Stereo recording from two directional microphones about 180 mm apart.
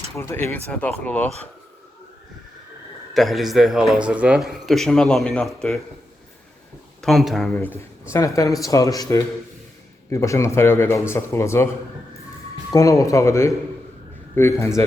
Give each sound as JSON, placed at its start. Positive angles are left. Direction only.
{"t": 0.2, "sound": "a man's voice", "side_deg": 15}
{"t": 3.2, "sound": "a man's voice", "side_deg": 0}
{"t": 7.0, "sound": "a man's voice", "side_deg": 0}
{"t": 7.5, "sound": "a man's voice", "side_deg": 10}
{"t": 12.7, "sound": "a man's voice", "side_deg": 20}